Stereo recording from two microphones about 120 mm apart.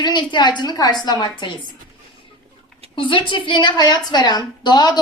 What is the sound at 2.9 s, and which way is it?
A woman's voice, 45° left (ahead or behind).